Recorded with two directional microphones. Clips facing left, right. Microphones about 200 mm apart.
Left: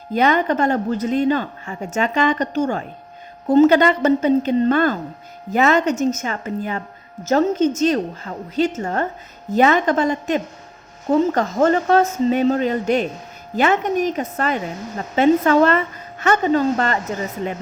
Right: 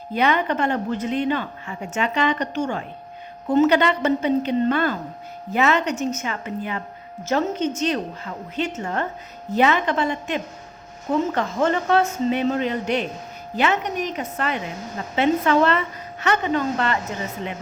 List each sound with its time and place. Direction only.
0.1 s a woman's voice: 40° left (ahead or behind)